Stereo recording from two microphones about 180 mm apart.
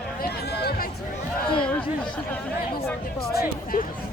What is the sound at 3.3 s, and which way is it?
Music, 60° left (ahead or behind).